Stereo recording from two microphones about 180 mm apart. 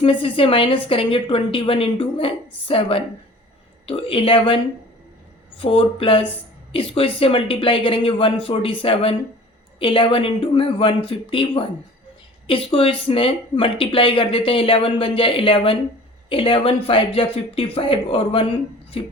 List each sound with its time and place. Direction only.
0.0 s speech: 30° left (ahead or behind)